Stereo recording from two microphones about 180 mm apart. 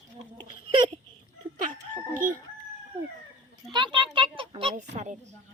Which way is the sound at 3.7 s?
25° right (ahead or behind).